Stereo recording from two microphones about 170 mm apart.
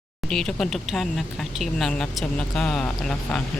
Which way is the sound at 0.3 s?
5° left (ahead or behind).